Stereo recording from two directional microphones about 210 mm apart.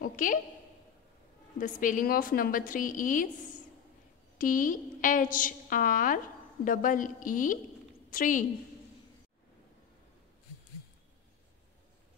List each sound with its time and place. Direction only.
0.0 s a woman's voice: 40° left (ahead or behind)
1.6 s a woman's voice: 40° left (ahead or behind)
4.4 s a woman's voice: 40° left (ahead or behind)